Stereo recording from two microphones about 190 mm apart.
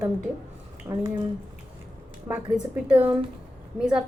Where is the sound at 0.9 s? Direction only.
15° right (ahead or behind).